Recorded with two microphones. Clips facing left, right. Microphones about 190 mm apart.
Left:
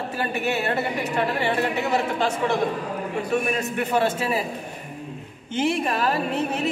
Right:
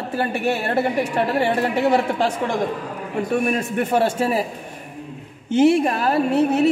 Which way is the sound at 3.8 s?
50° right (ahead or behind).